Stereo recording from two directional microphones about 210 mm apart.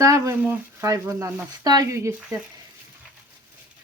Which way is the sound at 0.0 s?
15° right (ahead or behind).